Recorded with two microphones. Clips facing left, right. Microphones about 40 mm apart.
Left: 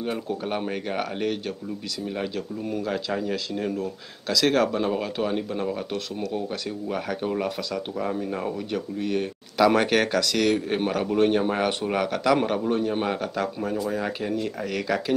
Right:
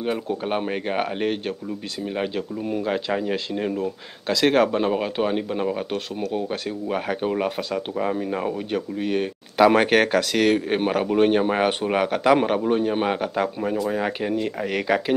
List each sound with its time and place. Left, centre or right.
0.0 s speech: right